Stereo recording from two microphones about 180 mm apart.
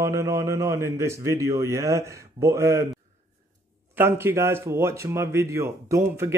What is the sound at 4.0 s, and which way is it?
Speech, 15° right (ahead or behind).